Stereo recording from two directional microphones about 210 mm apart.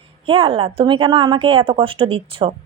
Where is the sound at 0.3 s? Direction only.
25° right (ahead or behind).